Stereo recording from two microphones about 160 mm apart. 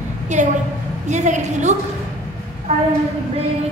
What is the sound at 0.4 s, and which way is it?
A woman's voice, 50° right (ahead or behind).